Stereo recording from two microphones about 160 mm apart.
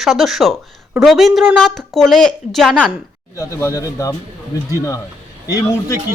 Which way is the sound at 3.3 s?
20° left (ahead or behind).